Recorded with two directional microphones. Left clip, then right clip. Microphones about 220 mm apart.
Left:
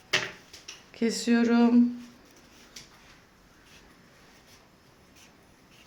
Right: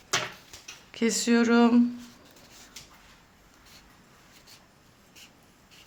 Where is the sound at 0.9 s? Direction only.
20° right (ahead or behind).